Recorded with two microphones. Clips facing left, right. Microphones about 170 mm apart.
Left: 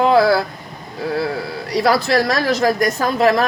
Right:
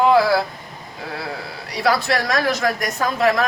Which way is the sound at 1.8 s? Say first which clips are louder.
Left 4 dB; 35° left (ahead or behind).